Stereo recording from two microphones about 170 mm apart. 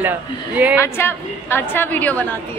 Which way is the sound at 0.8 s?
15° left (ahead or behind).